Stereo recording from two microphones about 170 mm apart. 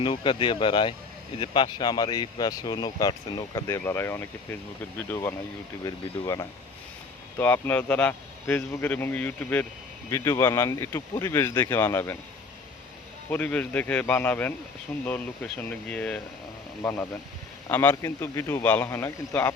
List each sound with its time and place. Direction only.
0.0 s a man's voice: 30° left (ahead or behind)
13.3 s a man's voice: 10° left (ahead or behind)